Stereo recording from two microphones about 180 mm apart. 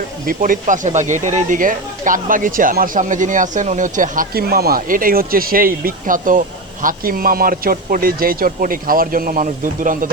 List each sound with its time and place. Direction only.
0.3 s speech: 50° right (ahead or behind)